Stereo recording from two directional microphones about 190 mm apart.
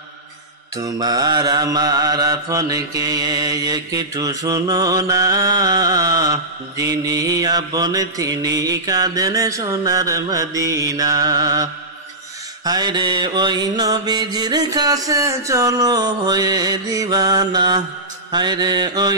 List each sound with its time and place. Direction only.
0.7 s mantra: 20° right (ahead or behind)